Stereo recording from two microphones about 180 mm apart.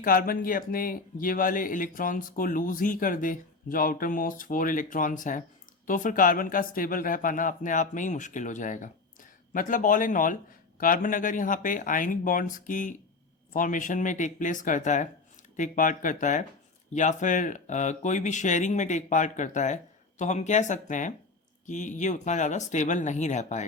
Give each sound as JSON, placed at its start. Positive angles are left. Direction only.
{"t": 0.0, "sound": "speech", "side_deg": 55}